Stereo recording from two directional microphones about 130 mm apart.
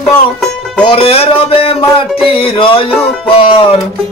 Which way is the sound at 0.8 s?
45° left (ahead or behind).